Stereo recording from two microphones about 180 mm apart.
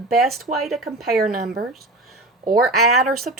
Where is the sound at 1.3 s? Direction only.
55° right (ahead or behind).